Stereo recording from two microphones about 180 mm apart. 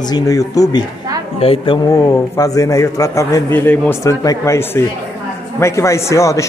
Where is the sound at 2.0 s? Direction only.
20° left (ahead or behind).